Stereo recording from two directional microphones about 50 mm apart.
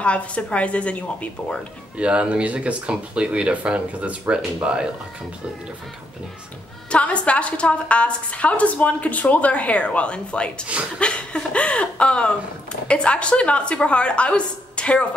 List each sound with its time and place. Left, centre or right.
0.0 s a woman's voice: left
2.0 s speech: right
6.9 s a woman's voice: left